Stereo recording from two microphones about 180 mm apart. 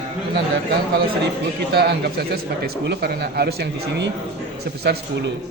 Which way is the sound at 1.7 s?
60° right (ahead or behind).